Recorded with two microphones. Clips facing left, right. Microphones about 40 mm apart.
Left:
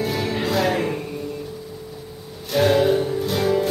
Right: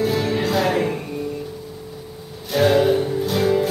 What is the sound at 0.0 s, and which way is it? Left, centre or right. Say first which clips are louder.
Music: right 3 dB; centre.